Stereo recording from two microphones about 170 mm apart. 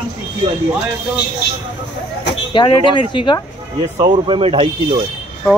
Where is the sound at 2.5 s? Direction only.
30° left (ahead or behind).